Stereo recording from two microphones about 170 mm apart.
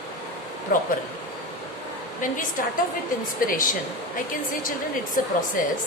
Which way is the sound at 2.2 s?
50° left (ahead or behind).